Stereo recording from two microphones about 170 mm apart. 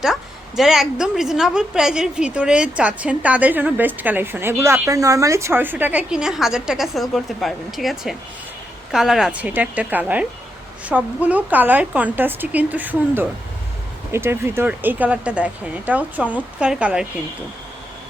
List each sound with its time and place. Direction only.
0.0 s a woman's voice: centre (ahead or behind)